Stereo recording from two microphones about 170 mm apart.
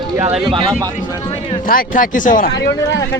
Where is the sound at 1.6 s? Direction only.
55° left (ahead or behind).